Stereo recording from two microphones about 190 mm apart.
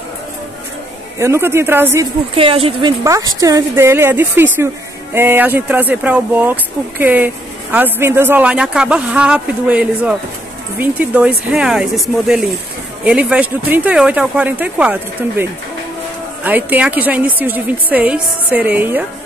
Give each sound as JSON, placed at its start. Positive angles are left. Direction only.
{"t": 1.2, "sound": "speech", "side_deg": -15}
{"t": 2.3, "sound": "a woman's voice", "side_deg": -30}
{"t": 3.0, "sound": "speech", "side_deg": -15}
{"t": 16.4, "sound": "speech", "side_deg": -10}